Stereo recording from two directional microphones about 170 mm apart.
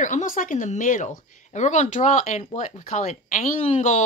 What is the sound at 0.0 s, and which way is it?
Speech, 50° left (ahead or behind).